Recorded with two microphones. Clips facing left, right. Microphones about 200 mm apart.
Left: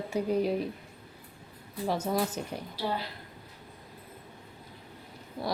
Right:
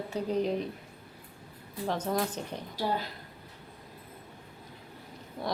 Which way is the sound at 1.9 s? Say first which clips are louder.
Left 1 dB; 5° left (ahead or behind).